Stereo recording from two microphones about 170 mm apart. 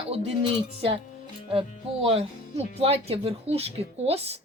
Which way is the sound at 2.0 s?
35° right (ahead or behind).